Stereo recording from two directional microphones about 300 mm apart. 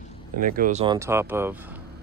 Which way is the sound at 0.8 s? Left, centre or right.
Centre.